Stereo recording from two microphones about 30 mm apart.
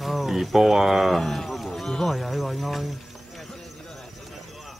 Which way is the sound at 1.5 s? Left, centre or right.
Centre.